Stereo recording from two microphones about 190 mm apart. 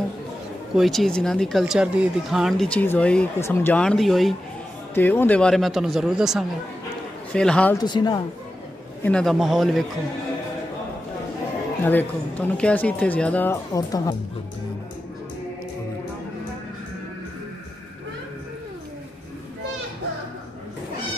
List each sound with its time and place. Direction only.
0.7 s speech: centre (ahead or behind)
4.9 s speech: 10° left (ahead or behind)
7.8 s speech: 25° left (ahead or behind)
9.0 s speech: 5° left (ahead or behind)
11.8 s speech: 10° left (ahead or behind)
13.7 s speech: 20° left (ahead or behind)